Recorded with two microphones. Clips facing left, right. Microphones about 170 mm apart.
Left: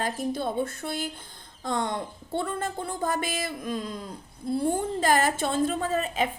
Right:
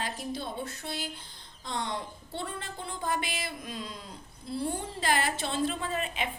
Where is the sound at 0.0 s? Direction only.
50° left (ahead or behind).